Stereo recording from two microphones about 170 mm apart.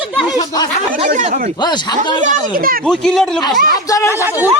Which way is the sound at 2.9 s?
5° left (ahead or behind).